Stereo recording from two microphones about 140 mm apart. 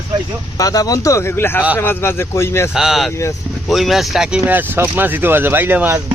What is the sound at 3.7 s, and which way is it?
Speech, centre (ahead or behind).